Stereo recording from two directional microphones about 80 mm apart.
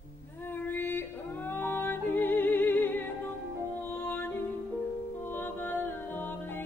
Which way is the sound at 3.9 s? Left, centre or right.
Left.